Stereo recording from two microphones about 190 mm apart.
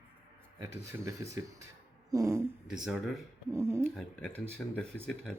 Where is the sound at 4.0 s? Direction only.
5° left (ahead or behind).